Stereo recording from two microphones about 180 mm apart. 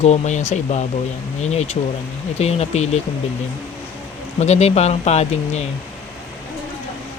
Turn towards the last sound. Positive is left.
turn(degrees=35)  # may be behind; listen again after turning